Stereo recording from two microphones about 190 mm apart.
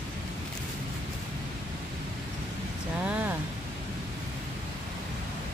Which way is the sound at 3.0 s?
5° right (ahead or behind).